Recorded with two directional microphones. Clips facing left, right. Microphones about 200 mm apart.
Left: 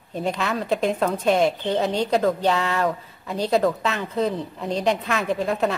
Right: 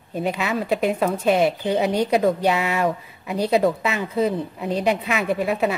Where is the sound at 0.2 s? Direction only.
5° right (ahead or behind).